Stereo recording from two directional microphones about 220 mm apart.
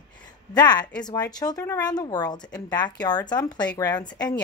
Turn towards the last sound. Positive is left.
turn(degrees=20)  # may be behind; listen again after turning